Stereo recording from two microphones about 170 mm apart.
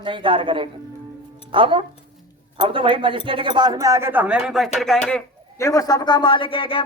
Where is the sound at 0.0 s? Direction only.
30° right (ahead or behind); by 4.9 s centre (ahead or behind).